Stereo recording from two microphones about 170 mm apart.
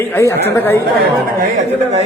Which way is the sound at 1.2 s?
55° right (ahead or behind).